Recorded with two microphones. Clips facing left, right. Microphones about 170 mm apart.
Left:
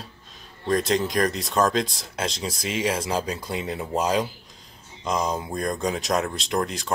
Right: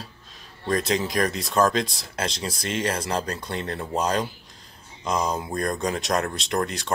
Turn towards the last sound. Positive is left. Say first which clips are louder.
# even
turn(degrees=0)  # may be behind; listen again after turning